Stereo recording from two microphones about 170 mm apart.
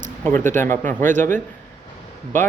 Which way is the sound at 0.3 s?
15° left (ahead or behind).